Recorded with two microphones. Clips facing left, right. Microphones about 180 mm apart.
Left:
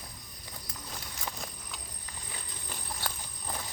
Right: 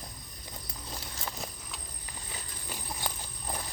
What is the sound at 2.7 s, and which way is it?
Horse, 15° right (ahead or behind).